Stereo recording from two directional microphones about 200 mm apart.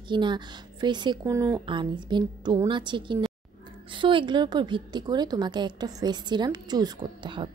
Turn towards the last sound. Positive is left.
turn(degrees=-25)  # may be behind; listen again after turning